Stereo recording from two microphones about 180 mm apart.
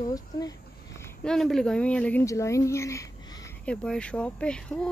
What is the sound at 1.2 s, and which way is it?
Speech, centre (ahead or behind).